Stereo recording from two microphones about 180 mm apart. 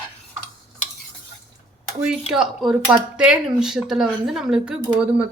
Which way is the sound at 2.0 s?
Centre (ahead or behind).